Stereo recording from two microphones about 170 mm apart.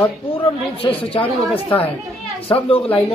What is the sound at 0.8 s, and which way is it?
Speech, 35° left (ahead or behind).